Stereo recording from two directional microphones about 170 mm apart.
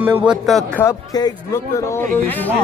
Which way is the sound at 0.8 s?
20° left (ahead or behind).